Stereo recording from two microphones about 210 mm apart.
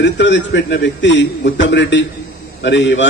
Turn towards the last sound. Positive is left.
turn(degrees=60)  # may be behind; listen again after turning